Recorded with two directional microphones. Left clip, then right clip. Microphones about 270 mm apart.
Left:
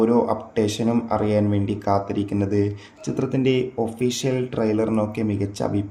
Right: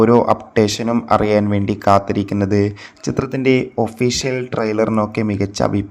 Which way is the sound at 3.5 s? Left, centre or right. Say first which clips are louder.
Right 5 dB; right.